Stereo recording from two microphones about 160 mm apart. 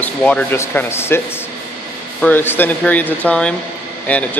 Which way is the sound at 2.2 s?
15° left (ahead or behind).